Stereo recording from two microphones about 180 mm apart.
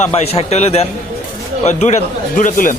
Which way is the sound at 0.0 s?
35° left (ahead or behind).